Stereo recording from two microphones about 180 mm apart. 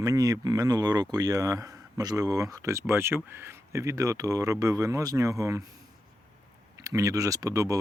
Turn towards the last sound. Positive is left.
turn(degrees=-15)  # may be behind; listen again after turning